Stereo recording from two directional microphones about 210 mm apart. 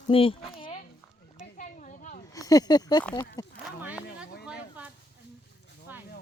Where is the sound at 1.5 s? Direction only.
40° left (ahead or behind).